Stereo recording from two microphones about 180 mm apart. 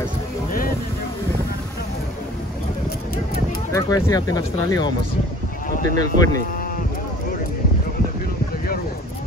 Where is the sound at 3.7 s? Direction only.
20° left (ahead or behind).